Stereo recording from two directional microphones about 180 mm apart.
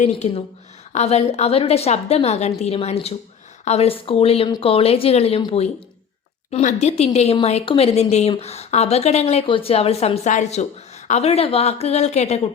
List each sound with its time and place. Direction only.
0.0 s speech: 35° left (ahead or behind)